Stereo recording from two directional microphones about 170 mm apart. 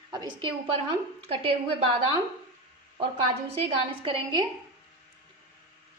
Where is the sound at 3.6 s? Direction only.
30° right (ahead or behind).